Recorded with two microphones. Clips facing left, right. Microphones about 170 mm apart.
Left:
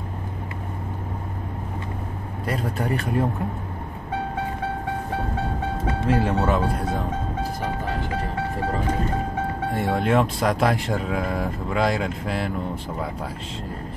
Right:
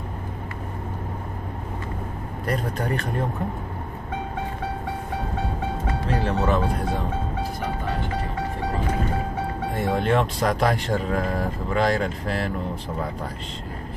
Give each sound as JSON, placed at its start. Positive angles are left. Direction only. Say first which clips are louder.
{"t": 2.4, "sound": "speech", "louder": "even", "side_deg": 5}
{"t": 6.0, "sound": "speech", "louder": "left 2 dB", "side_deg": 5}
{"t": 9.8, "sound": "speech", "louder": "left 1 dB", "side_deg": 0}